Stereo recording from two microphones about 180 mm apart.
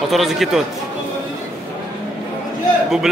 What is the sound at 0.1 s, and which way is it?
Speech, centre (ahead or behind).